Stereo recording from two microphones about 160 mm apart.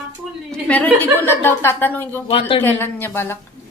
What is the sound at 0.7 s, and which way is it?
A woman's voice, 10° left (ahead or behind).